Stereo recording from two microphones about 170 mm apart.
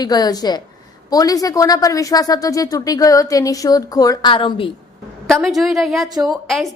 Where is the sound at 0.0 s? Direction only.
20° left (ahead or behind).